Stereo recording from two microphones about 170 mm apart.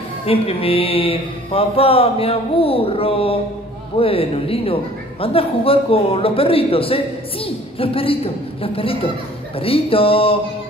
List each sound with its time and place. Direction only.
0.3 s mantra: 35° left (ahead or behind)